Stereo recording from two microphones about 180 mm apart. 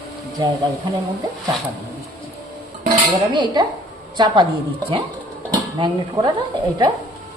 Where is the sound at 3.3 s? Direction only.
25° right (ahead or behind).